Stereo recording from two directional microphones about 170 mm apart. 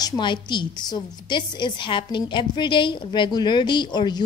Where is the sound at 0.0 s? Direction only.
25° left (ahead or behind).